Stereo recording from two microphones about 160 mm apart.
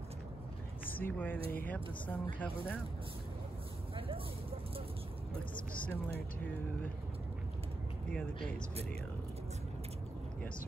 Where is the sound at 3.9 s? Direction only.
35° right (ahead or behind).